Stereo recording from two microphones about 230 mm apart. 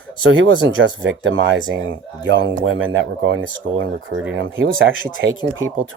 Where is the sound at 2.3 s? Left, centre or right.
Right.